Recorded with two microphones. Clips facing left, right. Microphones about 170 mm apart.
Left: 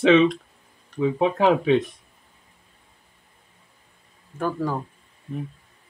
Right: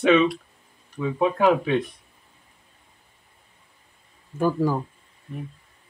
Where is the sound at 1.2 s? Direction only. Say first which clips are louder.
Right 1 dB; 20° left (ahead or behind).